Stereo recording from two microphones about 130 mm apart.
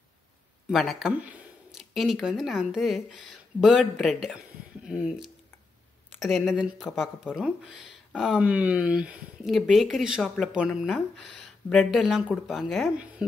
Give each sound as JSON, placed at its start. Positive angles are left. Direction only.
{"t": 0.7, "sound": "speech", "side_deg": 0}
{"t": 6.1, "sound": "speech", "side_deg": 0}